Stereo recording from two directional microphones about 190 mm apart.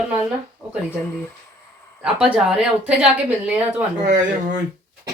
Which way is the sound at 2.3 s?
5° right (ahead or behind).